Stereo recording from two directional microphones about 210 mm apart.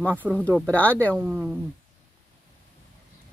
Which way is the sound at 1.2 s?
10° right (ahead or behind).